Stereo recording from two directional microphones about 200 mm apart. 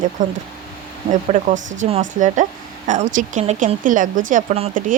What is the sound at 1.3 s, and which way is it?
Speech, 40° right (ahead or behind).